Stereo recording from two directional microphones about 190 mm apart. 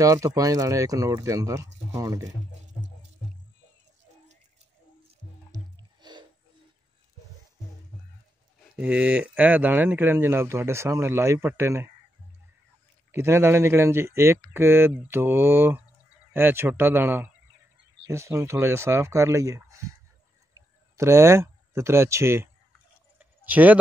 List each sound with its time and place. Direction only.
0.0 s speech: 15° right (ahead or behind)
5.5 s music: 20° right (ahead or behind)
8.7 s speech: 5° right (ahead or behind)
13.1 s speech: 15° right (ahead or behind)
23.1 s a sound: 10° right (ahead or behind)